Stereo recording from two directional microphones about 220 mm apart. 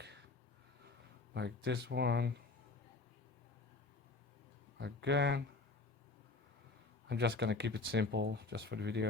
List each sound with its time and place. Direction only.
0.0 s a sound: 50° right (ahead or behind)
1.3 s speech: 50° right (ahead or behind)
4.8 s speech: 50° right (ahead or behind)
7.1 s speech: 50° right (ahead or behind)